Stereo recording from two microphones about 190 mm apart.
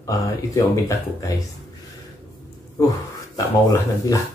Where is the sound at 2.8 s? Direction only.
15° left (ahead or behind).